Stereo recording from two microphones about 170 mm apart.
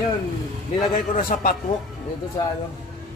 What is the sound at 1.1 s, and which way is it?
Speech, 55° left (ahead or behind).